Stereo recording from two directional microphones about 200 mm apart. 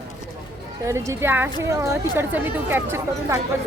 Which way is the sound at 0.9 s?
15° right (ahead or behind).